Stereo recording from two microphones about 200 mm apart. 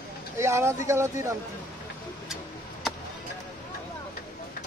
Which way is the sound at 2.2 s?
Centre (ahead or behind).